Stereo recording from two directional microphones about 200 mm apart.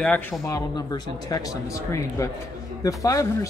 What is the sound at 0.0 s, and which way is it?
Speech, 10° left (ahead or behind).